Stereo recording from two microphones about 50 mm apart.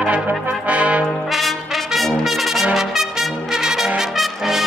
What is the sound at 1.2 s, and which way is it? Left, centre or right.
Brass instrument, centre.